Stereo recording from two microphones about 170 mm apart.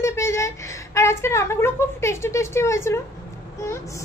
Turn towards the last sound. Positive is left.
turn(degrees=15)  # may be behind; listen again after turning